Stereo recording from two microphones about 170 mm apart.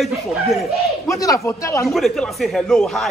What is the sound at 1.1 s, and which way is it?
Speech, 20° left (ahead or behind).